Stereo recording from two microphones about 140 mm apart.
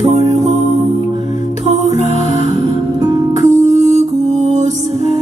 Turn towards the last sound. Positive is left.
turn(degrees=-55)  # may be behind; listen again after turning